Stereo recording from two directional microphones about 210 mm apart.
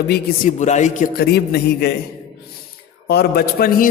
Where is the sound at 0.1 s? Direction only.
35° left (ahead or behind).